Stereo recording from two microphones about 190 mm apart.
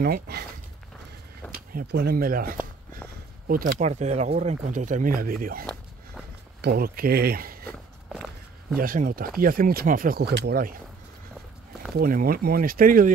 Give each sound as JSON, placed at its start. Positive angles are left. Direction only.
{"t": 0.0, "sound": "speech", "side_deg": -55}
{"t": 1.7, "sound": "speech", "side_deg": -55}
{"t": 8.1, "sound": "walk", "side_deg": -5}
{"t": 8.7, "sound": "speech", "side_deg": -45}
{"t": 12.0, "sound": "speech", "side_deg": -45}